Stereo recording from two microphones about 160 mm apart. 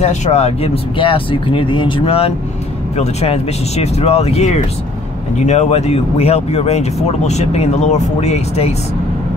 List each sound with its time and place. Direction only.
0.0 s speech: 45° left (ahead or behind)